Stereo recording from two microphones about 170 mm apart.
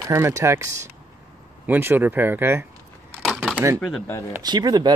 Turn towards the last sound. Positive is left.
turn(degrees=-25)  # may be behind; listen again after turning